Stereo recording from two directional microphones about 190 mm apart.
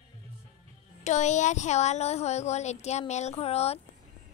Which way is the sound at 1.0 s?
35° left (ahead or behind).